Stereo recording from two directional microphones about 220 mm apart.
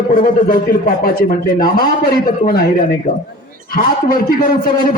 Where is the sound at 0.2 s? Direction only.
40° left (ahead or behind).